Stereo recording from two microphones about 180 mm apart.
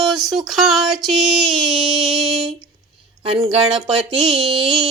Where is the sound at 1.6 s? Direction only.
25° right (ahead or behind).